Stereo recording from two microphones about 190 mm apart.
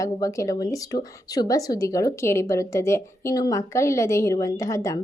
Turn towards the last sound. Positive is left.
turn(degrees=15)  # may be behind; listen again after turning